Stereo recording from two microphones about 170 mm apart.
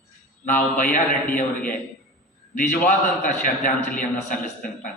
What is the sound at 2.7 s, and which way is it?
A man's voice, 50° left (ahead or behind).